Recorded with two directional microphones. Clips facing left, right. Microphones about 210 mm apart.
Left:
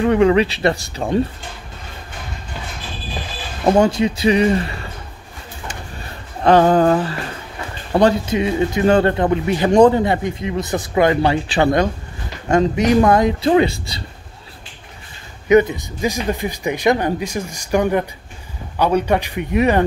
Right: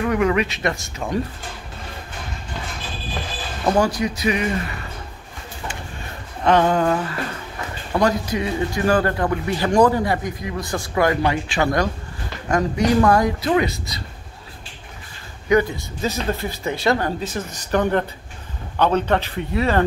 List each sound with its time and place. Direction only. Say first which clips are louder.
0.0 s speech: left 6 dB; 30° left (ahead or behind)
3.6 s speech: left 5 dB; 25° left (ahead or behind)
6.4 s speech: left 5 dB; 35° left (ahead or behind)
11.4 s speech: left 5 dB; 35° left (ahead or behind)
12.4 s speech: left 4 dB; 25° left (ahead or behind)
15.4 s speech: left 5 dB; 20° left (ahead or behind)